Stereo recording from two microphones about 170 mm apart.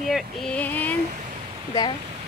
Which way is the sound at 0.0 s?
Centre (ahead or behind).